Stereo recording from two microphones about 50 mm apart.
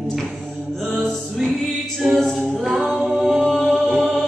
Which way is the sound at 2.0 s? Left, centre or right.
Centre.